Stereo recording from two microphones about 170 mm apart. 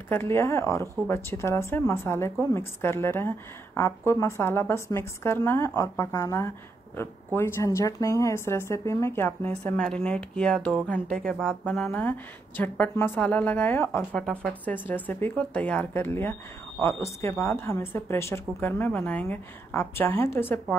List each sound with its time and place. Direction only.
0.1 s speech: 15° left (ahead or behind)